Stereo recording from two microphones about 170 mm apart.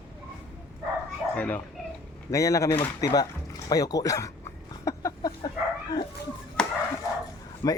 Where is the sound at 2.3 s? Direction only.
20° left (ahead or behind).